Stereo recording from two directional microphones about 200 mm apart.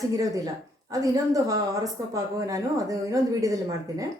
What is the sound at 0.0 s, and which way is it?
A woman's voice, 15° right (ahead or behind).